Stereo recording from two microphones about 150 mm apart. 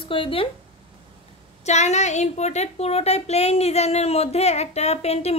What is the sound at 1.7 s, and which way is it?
Speech, 50° left (ahead or behind).